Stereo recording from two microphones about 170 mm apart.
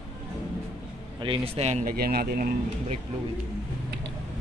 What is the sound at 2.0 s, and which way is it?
Speech, 65° right (ahead or behind).